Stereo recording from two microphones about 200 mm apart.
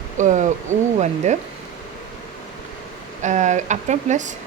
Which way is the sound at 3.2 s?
35° right (ahead or behind).